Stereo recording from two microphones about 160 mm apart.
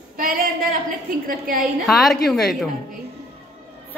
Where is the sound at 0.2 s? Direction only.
65° right (ahead or behind).